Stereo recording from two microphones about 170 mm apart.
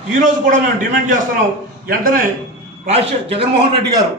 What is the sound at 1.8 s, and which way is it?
Speech, 55° right (ahead or behind).